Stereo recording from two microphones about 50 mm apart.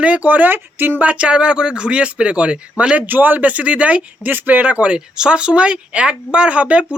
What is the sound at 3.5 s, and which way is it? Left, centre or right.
Speech, right.